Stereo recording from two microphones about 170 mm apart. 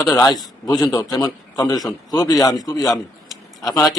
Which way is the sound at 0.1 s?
25° left (ahead or behind).